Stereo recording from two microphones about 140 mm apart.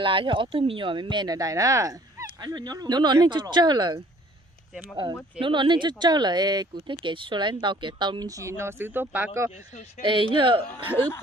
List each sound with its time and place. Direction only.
0.0 s speech: 40° right (ahead or behind)
5.4 s speech: 35° right (ahead or behind); by 9.5 s 15° right (ahead or behind)
10.0 s speech: 35° right (ahead or behind)